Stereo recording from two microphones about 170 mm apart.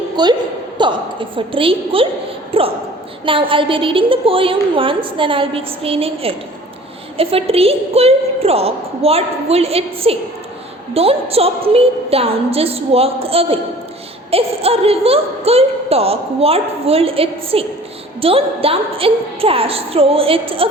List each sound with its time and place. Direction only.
0.2 s a woman's voice: 25° right (ahead or behind)